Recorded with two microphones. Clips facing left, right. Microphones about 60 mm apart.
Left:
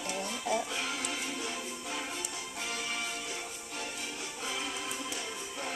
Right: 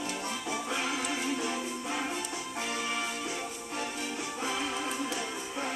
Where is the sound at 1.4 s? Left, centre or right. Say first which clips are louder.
Right 5 dB; right.